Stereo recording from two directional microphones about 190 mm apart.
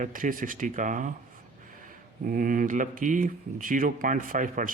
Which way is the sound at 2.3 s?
45° right (ahead or behind).